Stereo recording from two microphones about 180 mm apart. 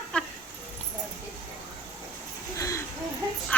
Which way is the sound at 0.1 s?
5° left (ahead or behind).